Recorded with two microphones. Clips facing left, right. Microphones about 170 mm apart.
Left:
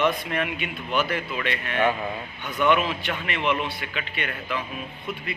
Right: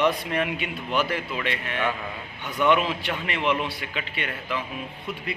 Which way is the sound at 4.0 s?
25° right (ahead or behind).